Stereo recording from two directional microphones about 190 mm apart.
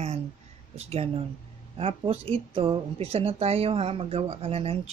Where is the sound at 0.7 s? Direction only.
30° right (ahead or behind).